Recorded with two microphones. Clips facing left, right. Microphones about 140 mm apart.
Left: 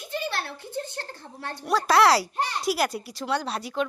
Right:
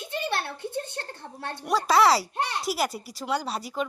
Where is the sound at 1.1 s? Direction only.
25° right (ahead or behind).